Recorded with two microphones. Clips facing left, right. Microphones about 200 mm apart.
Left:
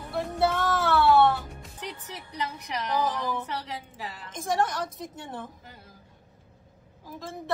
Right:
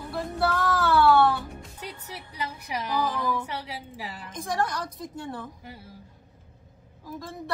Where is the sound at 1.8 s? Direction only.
10° right (ahead or behind).